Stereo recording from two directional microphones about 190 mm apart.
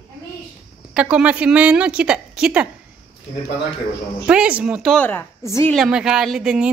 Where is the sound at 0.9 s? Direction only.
5° right (ahead or behind).